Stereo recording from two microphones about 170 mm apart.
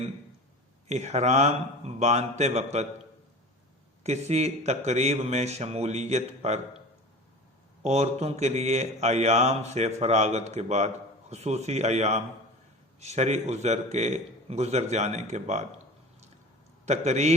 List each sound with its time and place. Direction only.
0.9 s speech: 40° right (ahead or behind)
4.0 s speech: 40° right (ahead or behind)
7.9 s speech: 40° right (ahead or behind)
16.8 s speech: 40° right (ahead or behind)